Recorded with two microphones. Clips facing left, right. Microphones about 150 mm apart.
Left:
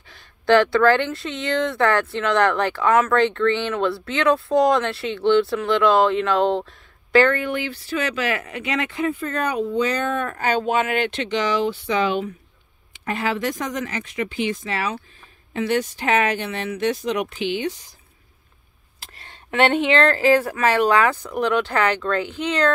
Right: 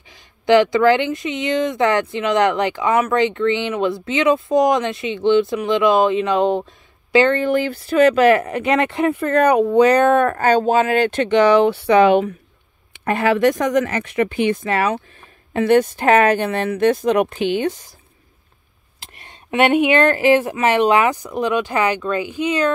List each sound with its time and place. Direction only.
0.1 s speech: 15° right (ahead or behind)
7.3 s speech: 40° right (ahead or behind); by 10.4 s 60° right (ahead or behind)
10.4 s speech: 40° right (ahead or behind)
18.9 s speech: 20° right (ahead or behind)